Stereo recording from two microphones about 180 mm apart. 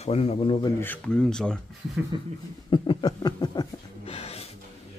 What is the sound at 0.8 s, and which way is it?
Speech, 10° left (ahead or behind).